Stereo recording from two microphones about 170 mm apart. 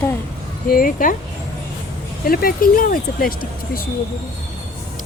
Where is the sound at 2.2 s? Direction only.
60° left (ahead or behind).